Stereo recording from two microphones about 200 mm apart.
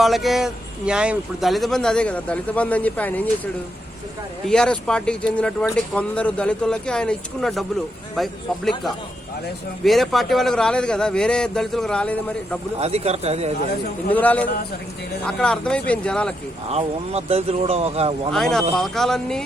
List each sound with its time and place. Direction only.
0.0 s speech: centre (ahead or behind)
4.4 s speech: 5° left (ahead or behind)
9.8 s speech: centre (ahead or behind)
12.8 s speech: 30° right (ahead or behind)
14.1 s a man's voice: 10° left (ahead or behind)
16.6 s speech: 30° right (ahead or behind)
18.3 s speech: centre (ahead or behind)